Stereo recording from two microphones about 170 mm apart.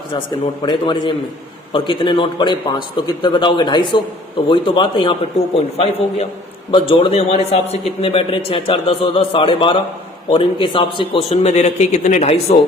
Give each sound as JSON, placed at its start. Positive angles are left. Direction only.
{"t": 0.6, "sound": "a man's voice", "side_deg": 25}